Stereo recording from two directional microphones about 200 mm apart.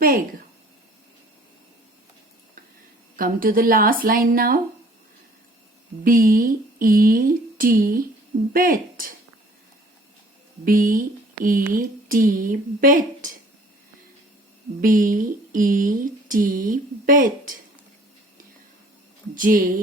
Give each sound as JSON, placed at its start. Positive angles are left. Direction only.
{"t": 3.2, "sound": "speech", "side_deg": -45}
{"t": 6.1, "sound": "speech", "side_deg": -45}
{"t": 10.7, "sound": "speech", "side_deg": -45}
{"t": 14.8, "sound": "speech", "side_deg": -40}
{"t": 19.3, "sound": "speech", "side_deg": -40}